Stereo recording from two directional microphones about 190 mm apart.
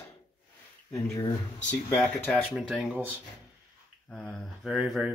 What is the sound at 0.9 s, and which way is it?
Speech, 15° left (ahead or behind).